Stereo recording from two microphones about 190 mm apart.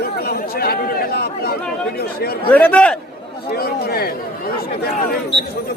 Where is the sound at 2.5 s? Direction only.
5° left (ahead or behind).